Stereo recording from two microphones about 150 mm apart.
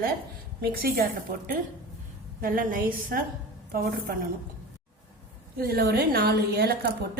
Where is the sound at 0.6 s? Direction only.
90° right.